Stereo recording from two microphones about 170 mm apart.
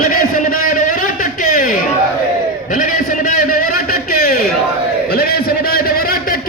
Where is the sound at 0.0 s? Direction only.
55° left (ahead or behind).